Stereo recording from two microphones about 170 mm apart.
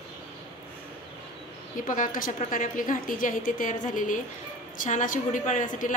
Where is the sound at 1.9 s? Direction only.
50° left (ahead or behind).